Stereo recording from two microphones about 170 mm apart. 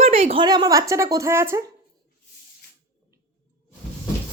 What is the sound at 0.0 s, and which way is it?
A woman's voice, 35° right (ahead or behind).